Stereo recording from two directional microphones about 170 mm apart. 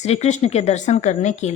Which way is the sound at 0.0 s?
40° left (ahead or behind).